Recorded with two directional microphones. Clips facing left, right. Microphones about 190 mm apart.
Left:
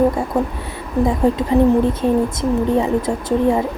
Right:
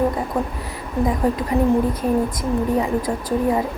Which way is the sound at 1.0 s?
25° left (ahead or behind).